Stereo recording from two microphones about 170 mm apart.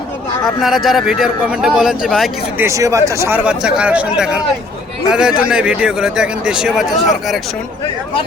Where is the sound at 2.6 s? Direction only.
15° right (ahead or behind).